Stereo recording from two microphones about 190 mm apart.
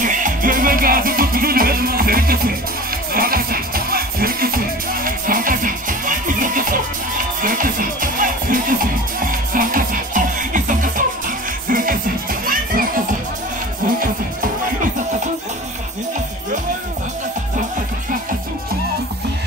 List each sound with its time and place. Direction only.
0.0 s music: 45° right (ahead or behind)